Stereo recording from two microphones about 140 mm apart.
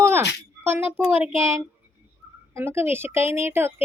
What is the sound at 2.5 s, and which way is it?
Speech, 15° right (ahead or behind).